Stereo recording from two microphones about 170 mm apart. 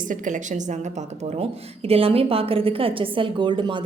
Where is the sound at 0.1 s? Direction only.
45° right (ahead or behind).